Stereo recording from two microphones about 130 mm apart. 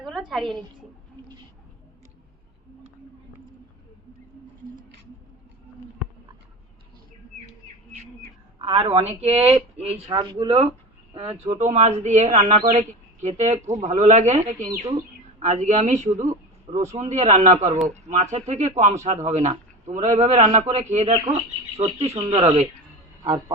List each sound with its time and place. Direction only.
0.3 s a woman's voice: centre (ahead or behind)
8.6 s a woman's voice: 45° right (ahead or behind)
10.1 s speech: 35° right (ahead or behind)
11.6 s a woman's voice: 60° right (ahead or behind)